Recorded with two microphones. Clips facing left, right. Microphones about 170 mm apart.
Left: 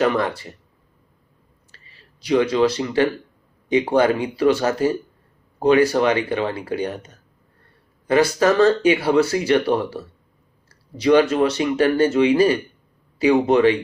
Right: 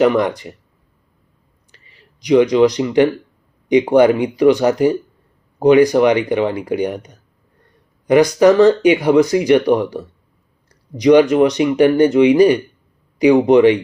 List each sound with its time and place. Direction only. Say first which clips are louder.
0.0 s speech: right 6 dB; 15° right (ahead or behind)
1.7 s speech: right 3 dB; 15° right (ahead or behind)